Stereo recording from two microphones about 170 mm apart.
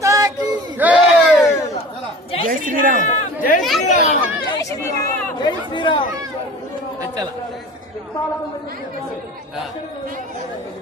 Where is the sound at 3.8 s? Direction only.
40° left (ahead or behind).